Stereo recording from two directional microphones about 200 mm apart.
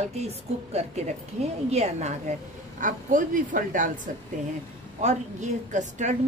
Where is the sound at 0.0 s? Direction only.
35° right (ahead or behind).